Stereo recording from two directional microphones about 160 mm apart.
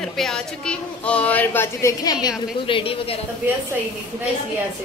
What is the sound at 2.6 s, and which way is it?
Speech, 35° left (ahead or behind).